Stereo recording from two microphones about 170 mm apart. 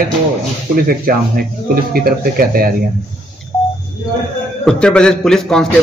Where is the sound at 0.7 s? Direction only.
60° right (ahead or behind).